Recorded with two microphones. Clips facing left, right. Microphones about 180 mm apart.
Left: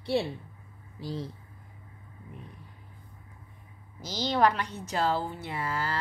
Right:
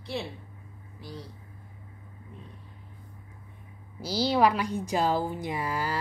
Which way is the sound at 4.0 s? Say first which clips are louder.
Right 2 dB; 10° right (ahead or behind).